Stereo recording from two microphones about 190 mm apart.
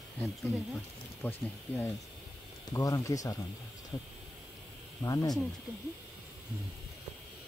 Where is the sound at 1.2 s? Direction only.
10° left (ahead or behind).